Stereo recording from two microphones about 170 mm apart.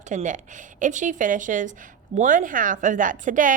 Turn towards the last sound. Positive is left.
turn(degrees=-50)  # may be behind; listen again after turning